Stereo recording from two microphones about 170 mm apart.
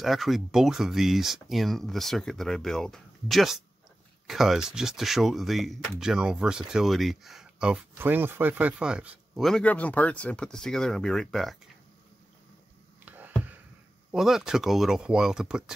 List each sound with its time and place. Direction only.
0.0 s speech: centre (ahead or behind)
13.0 s a sound: 10° right (ahead or behind)
14.1 s speech: centre (ahead or behind)